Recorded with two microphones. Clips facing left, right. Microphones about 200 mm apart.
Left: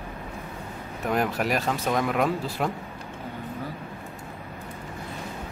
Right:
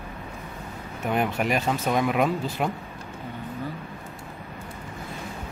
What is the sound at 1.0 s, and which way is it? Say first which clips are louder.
Speech: even; centre (ahead or behind).